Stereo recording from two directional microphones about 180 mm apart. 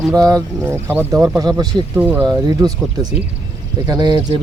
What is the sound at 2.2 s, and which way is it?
Speech, 20° right (ahead or behind).